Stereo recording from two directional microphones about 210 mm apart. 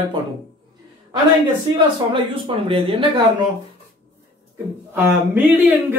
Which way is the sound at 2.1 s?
25° right (ahead or behind).